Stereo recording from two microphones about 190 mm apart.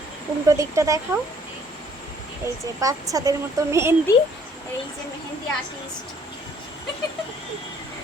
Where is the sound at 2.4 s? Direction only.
15° right (ahead or behind).